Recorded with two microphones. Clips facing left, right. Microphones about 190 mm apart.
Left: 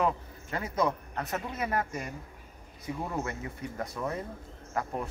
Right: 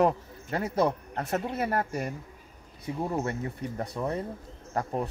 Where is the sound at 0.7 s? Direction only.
30° right (ahead or behind).